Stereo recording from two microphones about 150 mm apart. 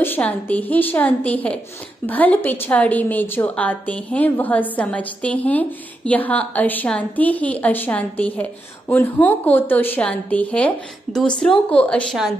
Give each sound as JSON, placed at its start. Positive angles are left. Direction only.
{"t": 0.0, "sound": "a woman's voice", "side_deg": 10}